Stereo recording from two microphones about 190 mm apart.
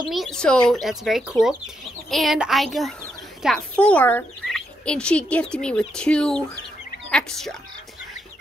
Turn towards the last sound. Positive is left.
turn(degrees=5)  # may be behind; listen again after turning